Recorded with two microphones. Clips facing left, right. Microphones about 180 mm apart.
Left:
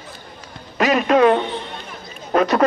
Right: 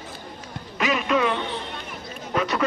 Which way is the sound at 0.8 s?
45° left (ahead or behind).